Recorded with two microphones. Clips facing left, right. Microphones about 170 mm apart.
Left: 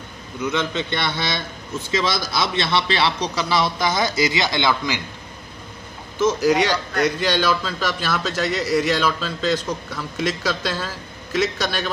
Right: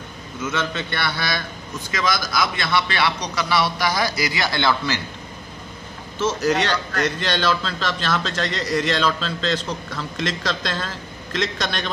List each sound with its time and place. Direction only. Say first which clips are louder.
0.4 s a man's voice: left 2 dB; 15° left (ahead or behind)
6.1 s a man's voice: left 3 dB; 10° left (ahead or behind)